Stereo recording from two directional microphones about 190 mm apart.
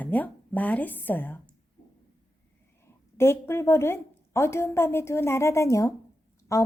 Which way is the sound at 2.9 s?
15° left (ahead or behind).